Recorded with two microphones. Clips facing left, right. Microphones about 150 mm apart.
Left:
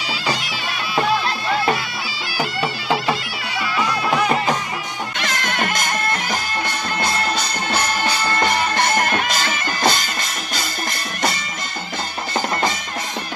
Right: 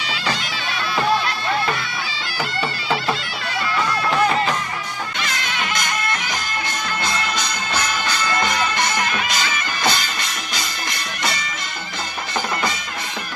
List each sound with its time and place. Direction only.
2.6 s bagpipes: centre (ahead or behind)
5.2 s music: 50° left (ahead or behind)
7.1 s music: 30° left (ahead or behind)
8.7 s music: 50° left (ahead or behind)